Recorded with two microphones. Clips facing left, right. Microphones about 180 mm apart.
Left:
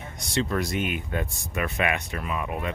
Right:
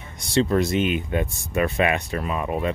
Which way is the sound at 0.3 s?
30° right (ahead or behind).